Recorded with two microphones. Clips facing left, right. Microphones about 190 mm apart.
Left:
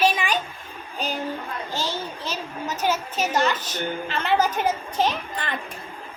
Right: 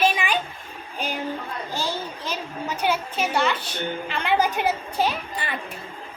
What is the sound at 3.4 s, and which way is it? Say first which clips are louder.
Speech: left 1 dB; 45° left (ahead or behind).